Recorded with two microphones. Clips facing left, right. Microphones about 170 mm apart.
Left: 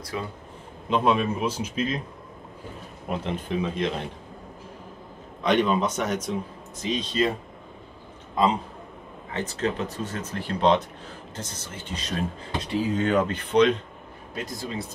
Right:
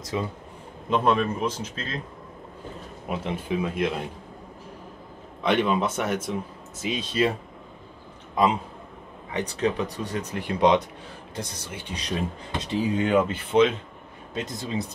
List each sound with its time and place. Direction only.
0.1 s speech: 20° right (ahead or behind)
0.8 s a man's voice: centre (ahead or behind)
3.1 s speech: 5° right (ahead or behind)
5.4 s speech: 10° right (ahead or behind)
9.3 s speech: 15° right (ahead or behind)
14.3 s speech: 20° right (ahead or behind)